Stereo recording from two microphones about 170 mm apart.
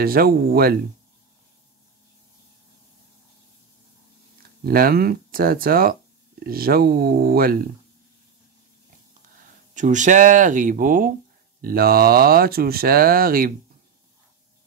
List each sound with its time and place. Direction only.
0.0 s speech: 60° right (ahead or behind)
4.6 s speech: 60° right (ahead or behind)
9.8 s speech: 45° right (ahead or behind)